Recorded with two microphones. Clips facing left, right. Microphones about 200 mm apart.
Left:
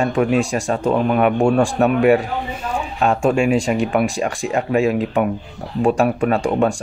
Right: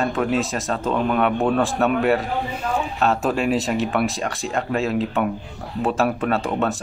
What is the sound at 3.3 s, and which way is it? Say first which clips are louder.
Speech: left 4 dB; centre (ahead or behind).